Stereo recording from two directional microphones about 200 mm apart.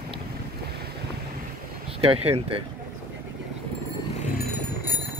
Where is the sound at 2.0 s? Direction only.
30° right (ahead or behind).